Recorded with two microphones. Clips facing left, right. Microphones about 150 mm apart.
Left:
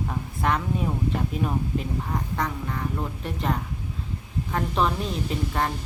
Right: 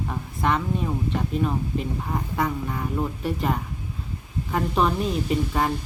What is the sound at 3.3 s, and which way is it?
Speech, 5° right (ahead or behind).